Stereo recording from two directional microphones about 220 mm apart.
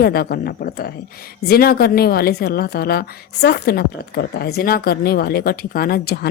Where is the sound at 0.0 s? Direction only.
45° left (ahead or behind).